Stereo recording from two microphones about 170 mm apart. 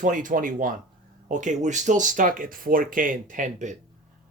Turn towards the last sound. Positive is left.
turn(degrees=-45)  # may be behind; listen again after turning